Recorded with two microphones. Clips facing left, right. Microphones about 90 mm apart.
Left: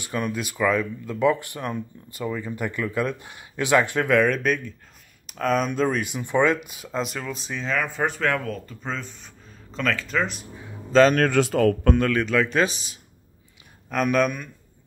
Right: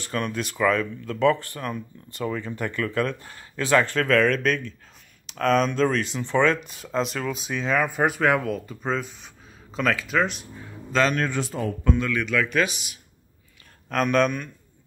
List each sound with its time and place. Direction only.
0.0 s speech: 10° left (ahead or behind)
2.0 s speech: 5° left (ahead or behind)
10.9 s a man's voice: 35° left (ahead or behind)
11.1 s a man's voice: 65° left (ahead or behind)
12.1 s speech: 35° left (ahead or behind)
13.8 s speech: 5° left (ahead or behind)